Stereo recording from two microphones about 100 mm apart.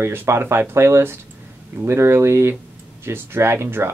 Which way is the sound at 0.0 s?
25° right (ahead or behind).